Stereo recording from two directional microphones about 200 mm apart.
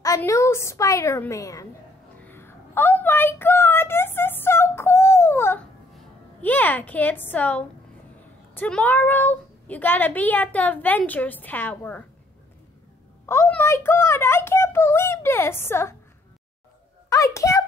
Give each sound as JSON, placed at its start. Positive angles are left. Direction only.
{"t": 0.0, "sound": "speech", "side_deg": 15}
{"t": 2.1, "sound": "a sound", "side_deg": 10}
{"t": 5.9, "sound": "a woman's voice", "side_deg": 10}
{"t": 13.3, "sound": "speech", "side_deg": 10}
{"t": 17.1, "sound": "a child's voice", "side_deg": 15}